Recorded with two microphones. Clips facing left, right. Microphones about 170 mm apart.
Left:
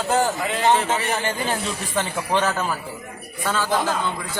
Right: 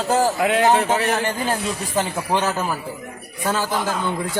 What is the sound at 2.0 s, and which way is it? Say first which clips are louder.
Speech: right 1 dB; 10° right (ahead or behind).